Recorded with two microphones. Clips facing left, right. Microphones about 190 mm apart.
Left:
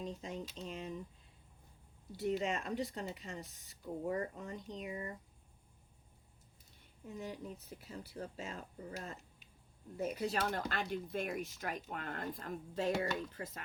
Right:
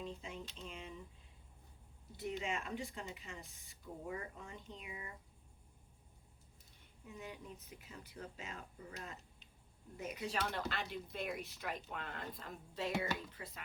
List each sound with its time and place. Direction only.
0.0 s a sound: 40° left (ahead or behind)
0.6 s speech: 40° left (ahead or behind)
2.1 s speech: 40° left (ahead or behind)
7.1 s speech: 35° left (ahead or behind)